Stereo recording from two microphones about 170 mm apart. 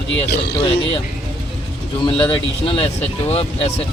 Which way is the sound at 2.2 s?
30° left (ahead or behind).